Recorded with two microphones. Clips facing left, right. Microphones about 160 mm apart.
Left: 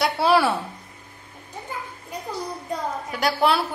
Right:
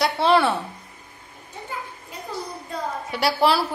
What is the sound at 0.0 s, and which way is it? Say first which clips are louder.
Speech: even; 5° left (ahead or behind).